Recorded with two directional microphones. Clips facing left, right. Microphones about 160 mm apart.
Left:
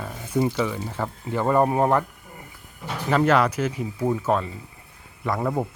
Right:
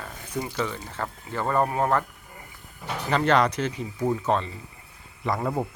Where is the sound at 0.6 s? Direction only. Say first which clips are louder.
Left 4 dB; 15° left (ahead or behind).